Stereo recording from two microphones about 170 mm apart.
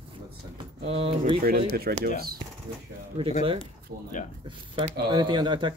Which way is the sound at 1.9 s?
60° right (ahead or behind).